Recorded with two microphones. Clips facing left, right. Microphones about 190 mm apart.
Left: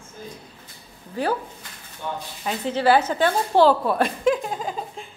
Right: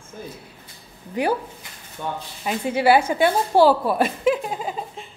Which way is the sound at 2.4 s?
10° right (ahead or behind).